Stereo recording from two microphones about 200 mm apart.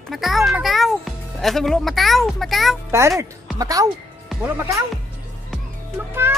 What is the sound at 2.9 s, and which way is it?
A child's voice, 15° right (ahead or behind).